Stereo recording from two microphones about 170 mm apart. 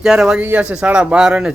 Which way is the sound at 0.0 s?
5° right (ahead or behind).